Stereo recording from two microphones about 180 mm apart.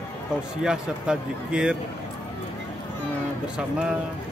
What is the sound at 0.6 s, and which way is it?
Speech, 5° right (ahead or behind).